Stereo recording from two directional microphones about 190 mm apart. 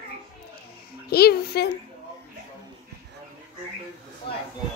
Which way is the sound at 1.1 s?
55° left (ahead or behind).